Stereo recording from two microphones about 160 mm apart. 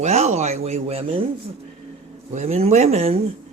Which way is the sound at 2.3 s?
45° right (ahead or behind).